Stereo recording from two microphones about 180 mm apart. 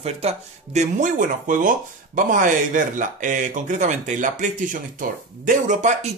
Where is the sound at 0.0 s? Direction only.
35° right (ahead or behind).